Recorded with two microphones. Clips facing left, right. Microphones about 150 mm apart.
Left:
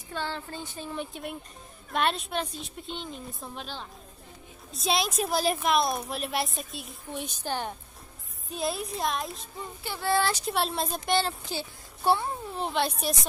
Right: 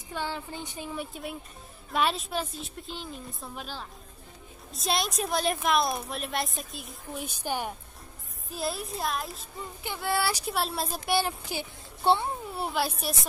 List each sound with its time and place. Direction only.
0.1 s speech: 15° right (ahead or behind)
0.9 s a woman's voice: centre (ahead or behind); by 12.3 s 20° right (ahead or behind)
12.5 s a woman's voice: 5° right (ahead or behind)